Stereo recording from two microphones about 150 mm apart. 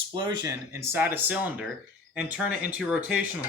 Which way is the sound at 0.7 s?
15° right (ahead or behind).